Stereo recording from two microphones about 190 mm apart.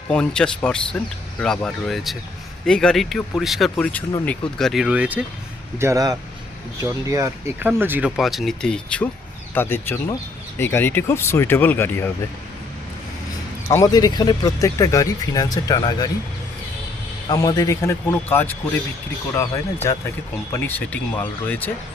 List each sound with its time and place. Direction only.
0.1 s speech: 5° left (ahead or behind)
5.8 s speech: 15° right (ahead or behind); by 12.1 s 10° left (ahead or behind)
13.7 s speech: 20° left (ahead or behind)
17.2 s speech: 20° left (ahead or behind)